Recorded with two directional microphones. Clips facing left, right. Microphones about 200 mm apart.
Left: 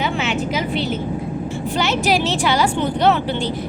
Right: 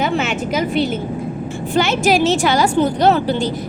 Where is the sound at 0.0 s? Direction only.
45° right (ahead or behind).